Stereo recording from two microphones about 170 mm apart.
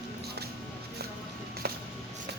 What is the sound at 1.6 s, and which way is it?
Music, 70° right (ahead or behind).